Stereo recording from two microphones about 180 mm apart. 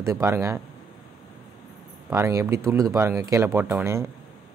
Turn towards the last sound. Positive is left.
turn(degrees=-15)  # may be behind; listen again after turning